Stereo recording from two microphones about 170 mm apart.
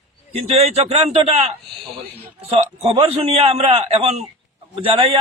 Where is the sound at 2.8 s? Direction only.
35° right (ahead or behind).